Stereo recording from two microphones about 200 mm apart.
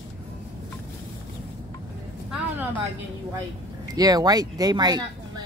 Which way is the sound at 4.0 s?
20° right (ahead or behind).